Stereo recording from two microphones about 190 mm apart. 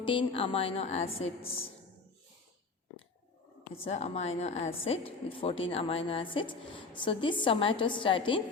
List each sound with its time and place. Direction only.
0.0 s a woman's voice: 25° left (ahead or behind)
3.8 s a woman's voice: 35° left (ahead or behind)